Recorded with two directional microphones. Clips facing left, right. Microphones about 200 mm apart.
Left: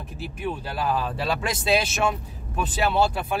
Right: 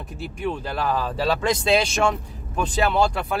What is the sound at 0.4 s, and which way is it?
Speech, 5° left (ahead or behind).